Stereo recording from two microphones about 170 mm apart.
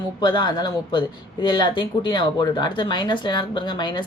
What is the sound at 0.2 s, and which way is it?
Speech, 25° left (ahead or behind).